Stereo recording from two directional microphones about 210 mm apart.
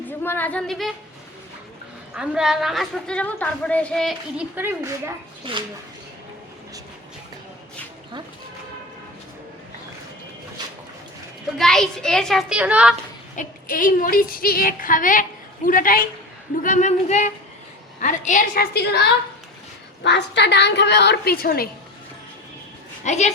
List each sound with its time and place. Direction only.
0.2 s speech: 10° left (ahead or behind)
2.1 s a woman's voice: 5° right (ahead or behind)
4.5 s a woman's voice: 10° right (ahead or behind)
5.5 s speech: 25° right (ahead or behind)
11.5 s a woman's voice: centre (ahead or behind)
13.3 s a woman's voice: 40° left (ahead or behind)
23.0 s a woman's voice: 30° left (ahead or behind)